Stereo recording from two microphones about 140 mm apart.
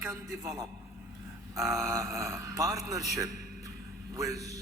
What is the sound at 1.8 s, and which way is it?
A man's voice, 20° right (ahead or behind).